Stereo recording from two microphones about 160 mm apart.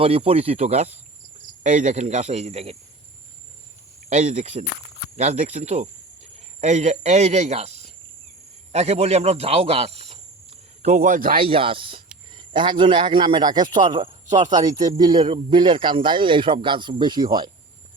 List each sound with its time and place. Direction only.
0.0 s speech: 35° right (ahead or behind)
4.1 s speech: 45° right (ahead or behind)
11.3 s speech: 35° right (ahead or behind)